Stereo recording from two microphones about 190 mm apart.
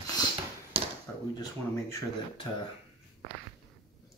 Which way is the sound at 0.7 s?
30° right (ahead or behind).